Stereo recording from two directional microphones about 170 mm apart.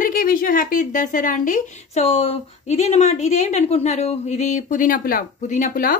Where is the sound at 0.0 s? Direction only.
55° left (ahead or behind).